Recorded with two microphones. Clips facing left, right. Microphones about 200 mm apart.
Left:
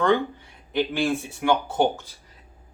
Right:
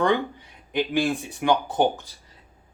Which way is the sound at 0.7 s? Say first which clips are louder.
Even; 15° right (ahead or behind).